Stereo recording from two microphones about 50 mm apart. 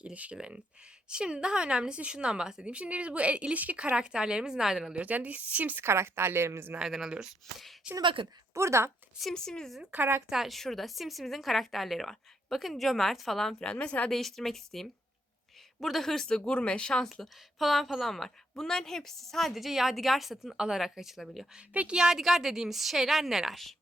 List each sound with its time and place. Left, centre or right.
0.0 s a woman's voice: right
3.9 s a woman's voice: centre
4.9 s a woman's voice: right
5.8 s a woman's voice: right
6.7 s a woman's voice: centre
7.9 s a woman's voice: right
8.5 s speech: right
9.3 s speech: centre
10.2 s a woman's voice: centre
13.7 s speech: left
14.1 s a woman's voice: centre
21.7 s a woman's voice: right
21.9 s a woman's voice: centre